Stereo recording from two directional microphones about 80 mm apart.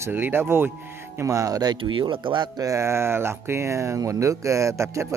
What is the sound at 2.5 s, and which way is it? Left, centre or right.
Speech, right.